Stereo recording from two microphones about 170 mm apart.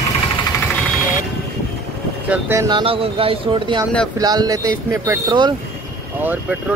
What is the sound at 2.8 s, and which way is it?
Speech, 35° right (ahead or behind).